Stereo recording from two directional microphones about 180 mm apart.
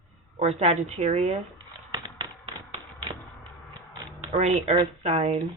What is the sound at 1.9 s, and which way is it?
Tap, 30° right (ahead or behind).